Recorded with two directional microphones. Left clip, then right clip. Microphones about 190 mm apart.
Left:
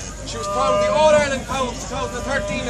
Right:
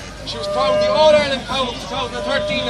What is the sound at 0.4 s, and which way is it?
Speech, 10° left (ahead or behind).